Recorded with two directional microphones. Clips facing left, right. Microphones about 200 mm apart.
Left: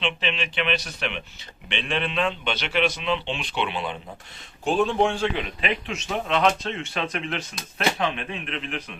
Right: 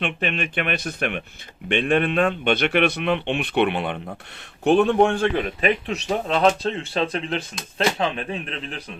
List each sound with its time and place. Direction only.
0.0 s speech: 55° right (ahead or behind); by 8.8 s 35° right (ahead or behind)